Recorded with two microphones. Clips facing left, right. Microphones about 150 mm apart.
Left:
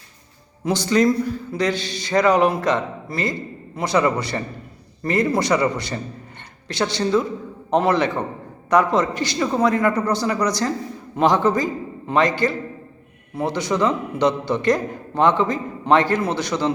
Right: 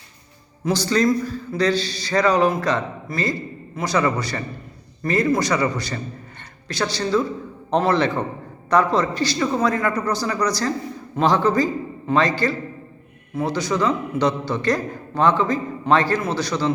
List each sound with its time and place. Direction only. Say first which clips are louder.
0.6 s a man's voice: left 1 dB; 20° left (ahead or behind)